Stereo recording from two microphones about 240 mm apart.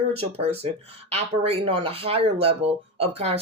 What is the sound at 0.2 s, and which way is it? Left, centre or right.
Speech, right.